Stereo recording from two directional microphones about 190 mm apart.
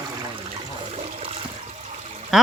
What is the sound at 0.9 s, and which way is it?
Toilet flush, 30° right (ahead or behind).